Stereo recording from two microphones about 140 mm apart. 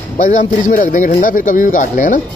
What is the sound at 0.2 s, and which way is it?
A man's voice, 70° left (ahead or behind).